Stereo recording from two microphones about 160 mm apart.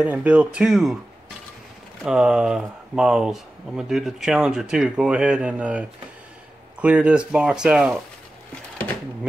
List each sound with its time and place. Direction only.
0.0 s speech: 10° right (ahead or behind)
2.0 s speech: 5° right (ahead or behind)